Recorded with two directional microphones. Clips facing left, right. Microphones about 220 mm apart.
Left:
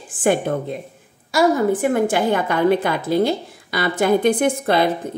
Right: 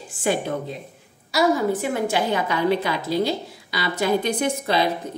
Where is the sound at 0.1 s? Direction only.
50° left (ahead or behind).